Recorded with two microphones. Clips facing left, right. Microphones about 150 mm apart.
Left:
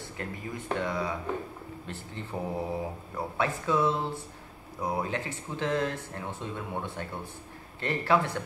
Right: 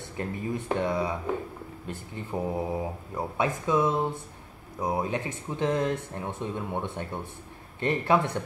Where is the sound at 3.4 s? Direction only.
15° right (ahead or behind).